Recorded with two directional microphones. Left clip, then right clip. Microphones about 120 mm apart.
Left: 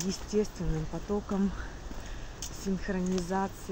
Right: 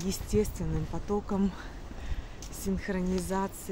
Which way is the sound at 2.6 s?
30° right (ahead or behind).